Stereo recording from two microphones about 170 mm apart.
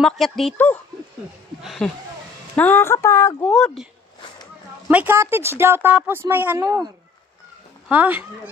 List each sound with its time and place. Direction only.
0.0 s speech: centre (ahead or behind)
2.5 s speech: 10° left (ahead or behind)
3.4 s speech: 5° left (ahead or behind)
4.8 s speech: 10° right (ahead or behind)
7.9 s speech: 10° right (ahead or behind)